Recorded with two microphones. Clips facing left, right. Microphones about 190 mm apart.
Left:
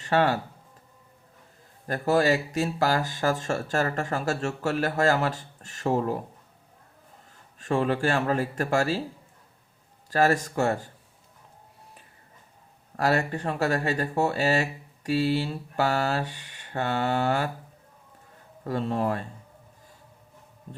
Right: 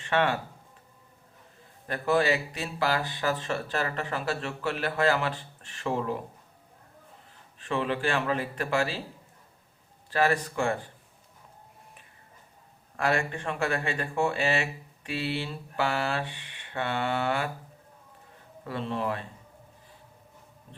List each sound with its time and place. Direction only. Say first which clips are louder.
0.0 s speech: left 3 dB; 40° left (ahead or behind)
1.9 s speech: left 3 dB; 40° left (ahead or behind)
7.6 s speech: left 4 dB; 45° left (ahead or behind)
10.1 s speech: left 3 dB; 45° left (ahead or behind)
13.0 s speech: left 3 dB; 40° left (ahead or behind)
18.6 s speech: left 4 dB; 40° left (ahead or behind)